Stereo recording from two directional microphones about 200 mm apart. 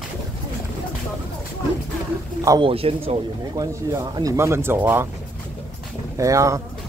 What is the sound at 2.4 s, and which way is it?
Speech, 20° right (ahead or behind).